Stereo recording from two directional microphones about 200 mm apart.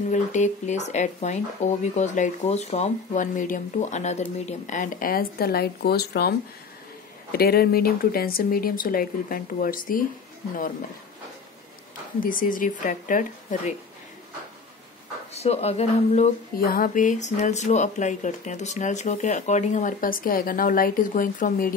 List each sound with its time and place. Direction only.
0.1 s speech: 35° left (ahead or behind)
7.3 s speech: 50° left (ahead or behind)
12.2 s speech: 45° left (ahead or behind)
15.3 s speech: 30° left (ahead or behind)
16.5 s speech: 45° left (ahead or behind)